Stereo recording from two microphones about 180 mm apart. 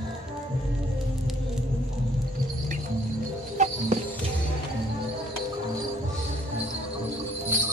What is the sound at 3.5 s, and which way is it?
Music, 45° right (ahead or behind).